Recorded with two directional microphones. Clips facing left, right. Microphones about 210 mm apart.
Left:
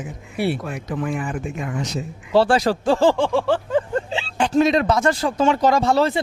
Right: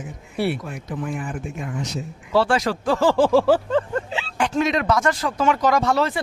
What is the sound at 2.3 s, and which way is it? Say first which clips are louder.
Speech: left 3 dB; 35° left (ahead or behind).